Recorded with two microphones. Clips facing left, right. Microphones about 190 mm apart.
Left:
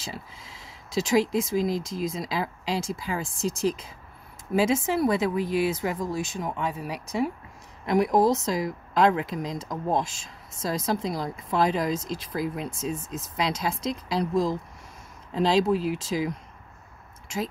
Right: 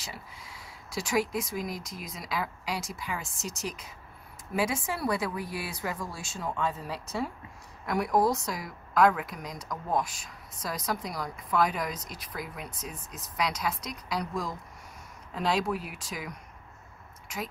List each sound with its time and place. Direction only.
0.0 s a sound: 25° left (ahead or behind)
1.3 s speech: 25° left (ahead or behind)
4.6 s speech: 25° left (ahead or behind)